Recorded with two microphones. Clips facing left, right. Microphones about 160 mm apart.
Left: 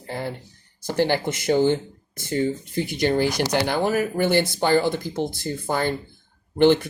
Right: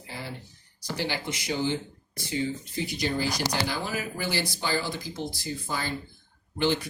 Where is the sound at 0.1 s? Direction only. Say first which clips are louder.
Left 9 dB; 55° left (ahead or behind).